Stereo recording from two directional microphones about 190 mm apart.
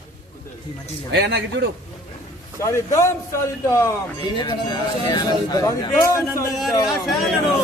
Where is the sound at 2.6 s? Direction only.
15° left (ahead or behind).